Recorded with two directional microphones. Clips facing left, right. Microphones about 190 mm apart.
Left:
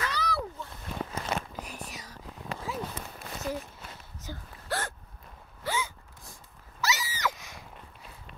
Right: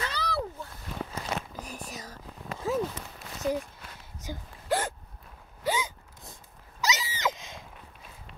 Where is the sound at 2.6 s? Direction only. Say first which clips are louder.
Right 9 dB; 45° right (ahead or behind).